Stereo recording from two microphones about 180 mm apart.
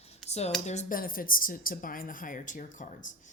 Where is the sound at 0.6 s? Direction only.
45° left (ahead or behind).